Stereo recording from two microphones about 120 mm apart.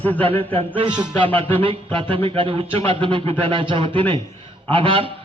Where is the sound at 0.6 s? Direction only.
45° right (ahead or behind).